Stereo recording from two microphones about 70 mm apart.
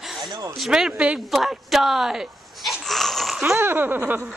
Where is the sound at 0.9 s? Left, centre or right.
Centre.